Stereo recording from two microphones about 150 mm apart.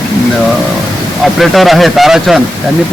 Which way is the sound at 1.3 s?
Centre (ahead or behind).